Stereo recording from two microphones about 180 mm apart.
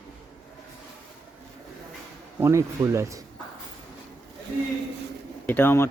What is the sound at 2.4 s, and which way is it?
Speech, 15° right (ahead or behind).